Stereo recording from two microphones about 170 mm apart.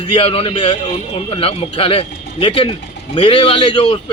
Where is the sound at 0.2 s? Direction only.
35° left (ahead or behind).